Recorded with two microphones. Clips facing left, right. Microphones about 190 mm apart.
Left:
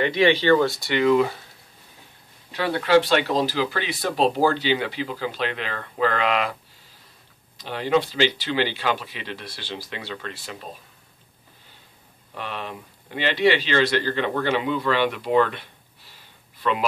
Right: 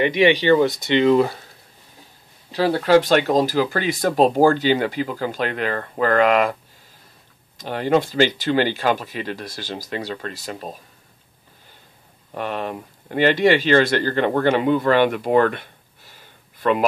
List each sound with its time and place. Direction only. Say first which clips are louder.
0.0 s speech: right 3 dB; 15° right (ahead or behind)
2.5 s speech: right 3 dB; 35° right (ahead or behind)
7.5 s speech: right 3 dB; 45° right (ahead or behind)
12.4 s speech: right 7 dB; 50° right (ahead or behind)